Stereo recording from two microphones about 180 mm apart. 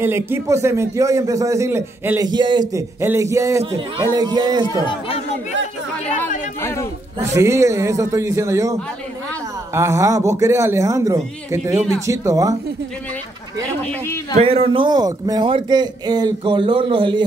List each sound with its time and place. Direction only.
0.0 s a man's voice: 15° right (ahead or behind)
4.6 s speech: 25° left (ahead or behind)
6.6 s a man's voice: 15° left (ahead or behind)
7.2 s a man's voice: 15° right (ahead or behind)
9.8 s a man's voice: 15° right (ahead or behind)
14.4 s a man's voice: 30° right (ahead or behind)